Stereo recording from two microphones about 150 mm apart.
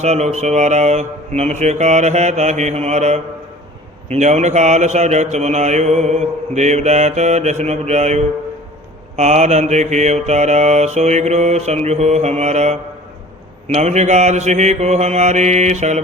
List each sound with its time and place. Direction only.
0.0 s speech: 45° right (ahead or behind)